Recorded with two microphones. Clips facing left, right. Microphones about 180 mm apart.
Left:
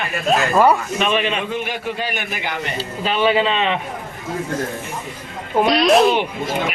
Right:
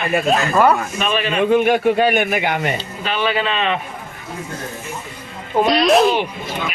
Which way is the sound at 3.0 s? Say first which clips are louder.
Left 4 dB; 25° left (ahead or behind).